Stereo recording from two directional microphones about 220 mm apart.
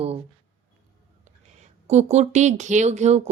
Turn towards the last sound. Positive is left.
turn(degrees=-30)  # may be behind; listen again after turning